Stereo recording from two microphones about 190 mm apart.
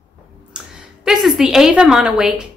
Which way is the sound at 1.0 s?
Centre (ahead or behind).